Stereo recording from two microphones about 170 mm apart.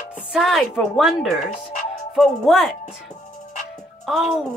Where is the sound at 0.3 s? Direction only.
Centre (ahead or behind).